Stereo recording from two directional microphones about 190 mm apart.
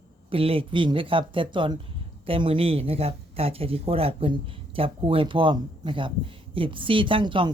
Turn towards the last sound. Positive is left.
turn(degrees=-25)  # may be behind; listen again after turning